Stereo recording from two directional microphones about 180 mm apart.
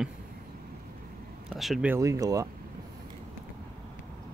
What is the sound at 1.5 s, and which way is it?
Speech, centre (ahead or behind).